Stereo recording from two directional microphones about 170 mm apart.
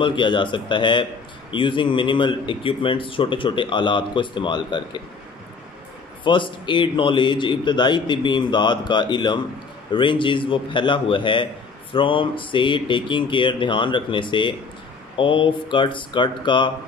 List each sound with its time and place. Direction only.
0.0 s speech: 30° left (ahead or behind)
6.2 s speech: 30° left (ahead or behind)